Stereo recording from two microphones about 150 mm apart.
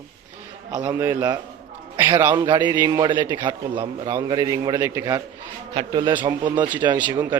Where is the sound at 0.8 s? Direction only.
15° right (ahead or behind).